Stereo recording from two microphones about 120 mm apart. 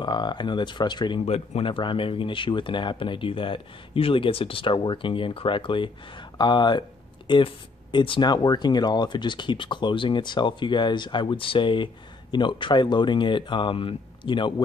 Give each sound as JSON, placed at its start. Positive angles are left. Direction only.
{"t": 0.0, "sound": "speech", "side_deg": 40}
{"t": 1.2, "sound": "speech", "side_deg": 60}